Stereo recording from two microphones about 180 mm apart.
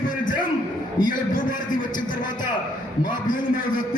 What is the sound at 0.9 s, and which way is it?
Speech, 50° left (ahead or behind).